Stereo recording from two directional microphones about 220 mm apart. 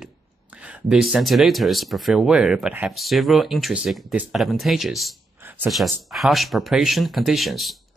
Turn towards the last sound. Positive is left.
turn(degrees=0)  # may be behind; listen again after turning